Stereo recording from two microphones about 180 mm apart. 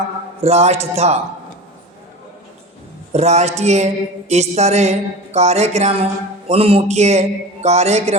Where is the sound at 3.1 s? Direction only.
40° right (ahead or behind).